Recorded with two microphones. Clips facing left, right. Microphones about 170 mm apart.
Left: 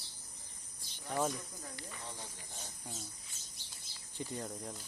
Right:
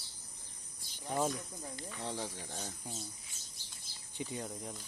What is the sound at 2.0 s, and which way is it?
Speech, 90° right.